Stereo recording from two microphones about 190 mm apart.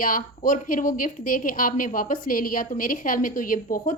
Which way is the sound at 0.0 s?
45° left (ahead or behind).